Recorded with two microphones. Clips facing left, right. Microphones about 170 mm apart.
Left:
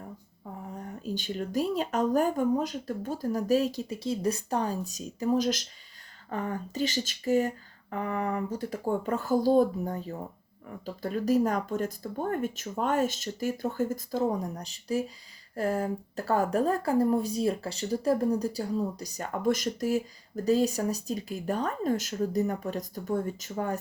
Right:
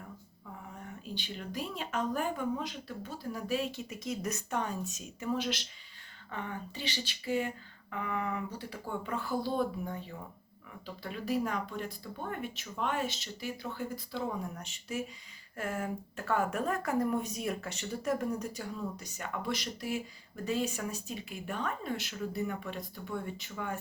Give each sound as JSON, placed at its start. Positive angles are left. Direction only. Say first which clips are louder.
{"t": 0.8, "sound": "a woman's voice", "louder": "left 8 dB", "side_deg": 40}